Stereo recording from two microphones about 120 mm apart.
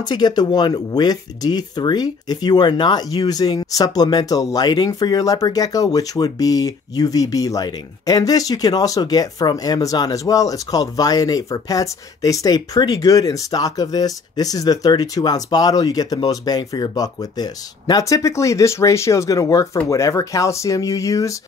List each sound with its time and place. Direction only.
0.0 s speech: 35° left (ahead or behind)